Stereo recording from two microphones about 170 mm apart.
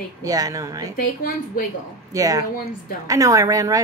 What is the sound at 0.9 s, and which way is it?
Speech, 55° left (ahead or behind).